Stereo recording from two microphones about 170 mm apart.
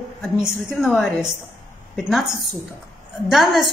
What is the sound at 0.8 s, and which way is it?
A woman's voice, centre (ahead or behind).